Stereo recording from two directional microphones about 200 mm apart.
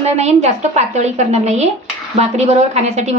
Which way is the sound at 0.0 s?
35° right (ahead or behind).